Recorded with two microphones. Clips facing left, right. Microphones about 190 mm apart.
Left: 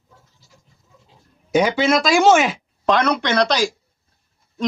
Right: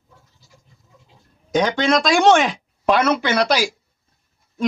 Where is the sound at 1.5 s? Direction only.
10° left (ahead or behind).